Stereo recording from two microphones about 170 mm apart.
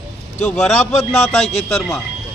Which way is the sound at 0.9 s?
40° left (ahead or behind).